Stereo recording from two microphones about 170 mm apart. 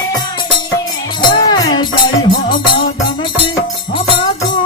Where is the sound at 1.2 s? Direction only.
25° left (ahead or behind).